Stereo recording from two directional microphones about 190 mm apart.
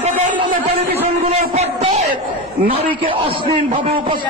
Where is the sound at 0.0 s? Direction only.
40° right (ahead or behind).